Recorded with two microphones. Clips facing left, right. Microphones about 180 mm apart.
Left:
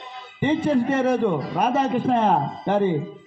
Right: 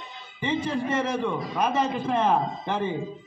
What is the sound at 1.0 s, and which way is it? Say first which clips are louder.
A man's voice: left 6 dB; 60° left (ahead or behind).